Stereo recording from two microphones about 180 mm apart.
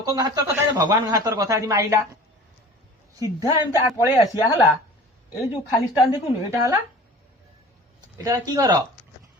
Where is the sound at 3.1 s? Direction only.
20° right (ahead or behind).